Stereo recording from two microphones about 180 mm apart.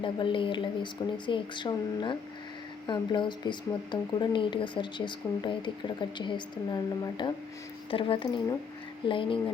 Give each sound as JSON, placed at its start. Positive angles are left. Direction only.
{"t": 0.0, "sound": "speech", "side_deg": 25}